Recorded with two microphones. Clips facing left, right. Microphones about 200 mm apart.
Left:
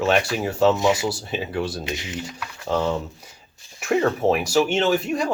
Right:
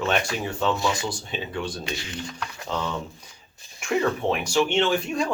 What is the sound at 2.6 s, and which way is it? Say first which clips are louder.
Speech: left 7 dB; 35° left (ahead or behind).